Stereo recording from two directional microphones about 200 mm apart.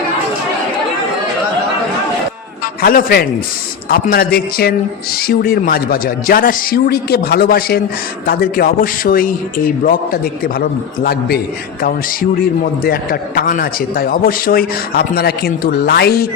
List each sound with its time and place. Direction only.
2.8 s a man's voice: 50° left (ahead or behind)
12.8 s a man's voice: 50° left (ahead or behind)